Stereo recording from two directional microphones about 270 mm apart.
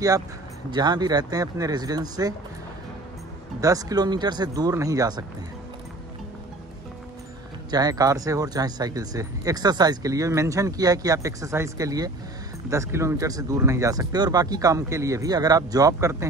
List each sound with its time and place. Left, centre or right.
0.7 s speech: centre
3.6 s speech: centre
7.7 s speech: centre